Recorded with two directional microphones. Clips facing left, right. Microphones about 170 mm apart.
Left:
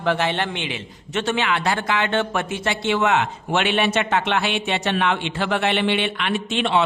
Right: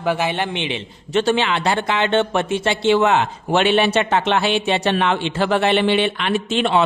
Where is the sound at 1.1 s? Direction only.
30° right (ahead or behind).